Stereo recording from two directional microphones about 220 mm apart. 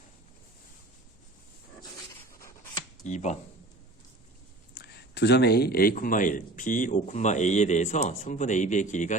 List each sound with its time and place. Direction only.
3.0 s speech: 35° left (ahead or behind)
4.8 s speech: 50° left (ahead or behind); by 9.1 s 35° left (ahead or behind)